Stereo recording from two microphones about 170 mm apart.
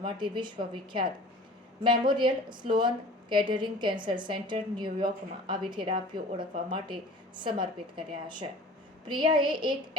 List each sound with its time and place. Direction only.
0.0 s a woman's voice: 30° right (ahead or behind)